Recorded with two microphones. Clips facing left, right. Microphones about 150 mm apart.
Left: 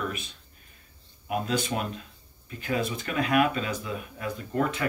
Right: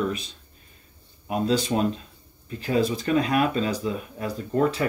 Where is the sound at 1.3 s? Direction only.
30° right (ahead or behind).